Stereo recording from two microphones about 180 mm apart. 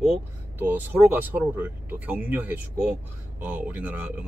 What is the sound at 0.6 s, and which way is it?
Speech, 10° right (ahead or behind).